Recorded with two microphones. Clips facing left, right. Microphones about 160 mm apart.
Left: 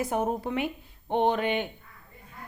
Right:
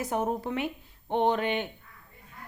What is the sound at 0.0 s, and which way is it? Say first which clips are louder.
A woman's voice: left 1 dB; 10° left (ahead or behind).